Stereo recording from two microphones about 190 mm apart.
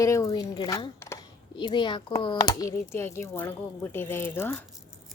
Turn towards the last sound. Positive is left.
turn(degrees=10)  # may be behind; listen again after turning